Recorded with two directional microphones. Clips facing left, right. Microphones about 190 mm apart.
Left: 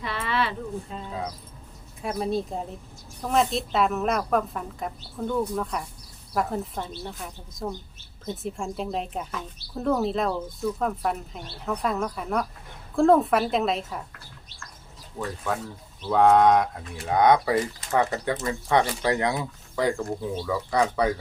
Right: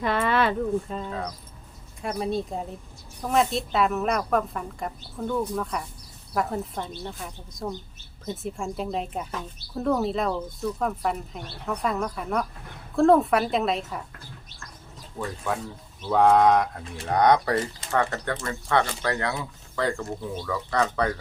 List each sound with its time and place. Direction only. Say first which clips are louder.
0.0 s a sound: right 5 dB; 50° right (ahead or behind)
2.0 s speech: left 1 dB; centre (ahead or behind)
15.2 s speech: even; 10° left (ahead or behind)